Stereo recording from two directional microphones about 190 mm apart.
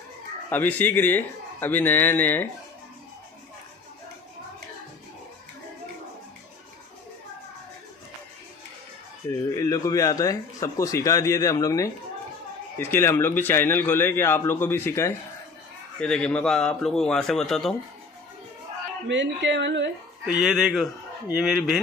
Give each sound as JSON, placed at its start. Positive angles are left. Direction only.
{"t": 0.5, "sound": "a man's voice", "side_deg": 10}
{"t": 9.5, "sound": "a man's voice", "side_deg": 15}
{"t": 19.0, "sound": "speech", "side_deg": -70}
{"t": 20.2, "sound": "speech", "side_deg": 0}